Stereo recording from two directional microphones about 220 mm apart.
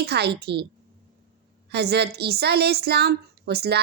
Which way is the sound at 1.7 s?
50° right (ahead or behind).